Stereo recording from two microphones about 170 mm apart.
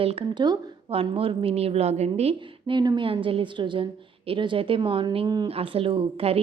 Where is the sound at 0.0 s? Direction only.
35° right (ahead or behind).